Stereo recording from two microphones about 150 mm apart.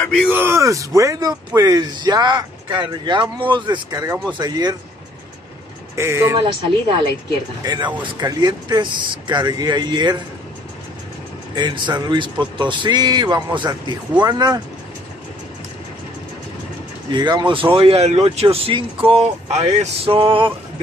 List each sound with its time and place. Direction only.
0.0 s speech: centre (ahead or behind)
0.3 s speech: 15° right (ahead or behind)
5.9 s speech: 20° right (ahead or behind)
7.6 s speech: 30° right (ahead or behind)
11.5 s speech: 30° right (ahead or behind)
17.1 s speech: 30° right (ahead or behind)